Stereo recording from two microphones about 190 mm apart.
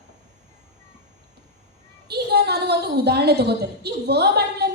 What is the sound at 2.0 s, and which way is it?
A woman's voice, 60° right (ahead or behind).